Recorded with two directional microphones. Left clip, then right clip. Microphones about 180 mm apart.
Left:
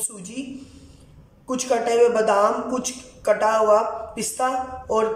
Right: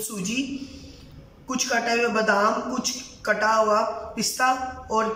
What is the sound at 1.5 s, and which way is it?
A man's voice, 20° left (ahead or behind).